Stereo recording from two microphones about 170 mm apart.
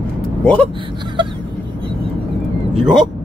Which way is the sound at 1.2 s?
30° right (ahead or behind).